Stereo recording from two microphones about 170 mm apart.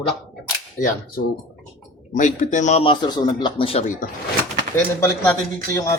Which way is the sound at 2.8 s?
25° left (ahead or behind).